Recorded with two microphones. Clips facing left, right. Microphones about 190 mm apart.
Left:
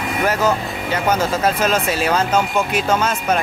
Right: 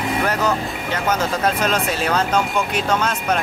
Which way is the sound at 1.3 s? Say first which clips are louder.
Left 2 dB; 5° left (ahead or behind).